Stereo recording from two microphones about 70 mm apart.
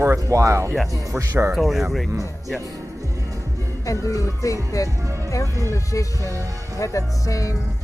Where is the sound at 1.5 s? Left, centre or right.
Centre.